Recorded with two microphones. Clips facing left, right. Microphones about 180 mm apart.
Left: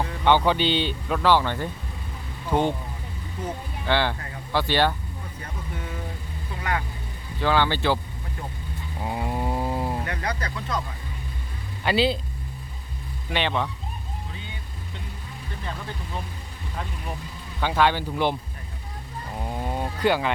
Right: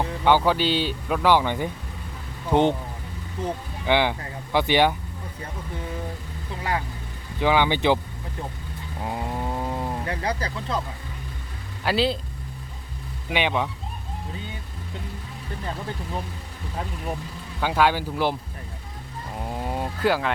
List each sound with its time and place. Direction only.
0.3 s speech: 5° right (ahead or behind)
3.8 s speech: 15° right (ahead or behind)
6.6 s speech: 30° right (ahead or behind)
7.3 s speech: 15° right (ahead or behind)
9.0 s a sound: centre (ahead or behind)
10.1 s speech: 30° right (ahead or behind)
11.9 s speech: centre (ahead or behind)
13.3 s speech: 10° right (ahead or behind)
17.6 s speech: 5° right (ahead or behind)
19.4 s vehicle: 5° right (ahead or behind)